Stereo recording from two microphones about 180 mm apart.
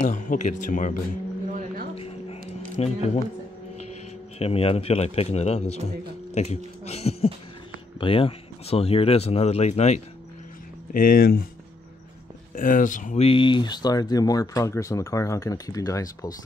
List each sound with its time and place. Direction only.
0.0 s speech: 45° left (ahead or behind)
1.5 s music: 45° right (ahead or behind)
2.0 s a sound: 35° left (ahead or behind)
2.8 s speech: 35° left (ahead or behind)
4.4 s speech: 35° left (ahead or behind)
10.9 s speech: 50° left (ahead or behind)
12.5 s speech: 50° left (ahead or behind); by 16.3 s 20° left (ahead or behind)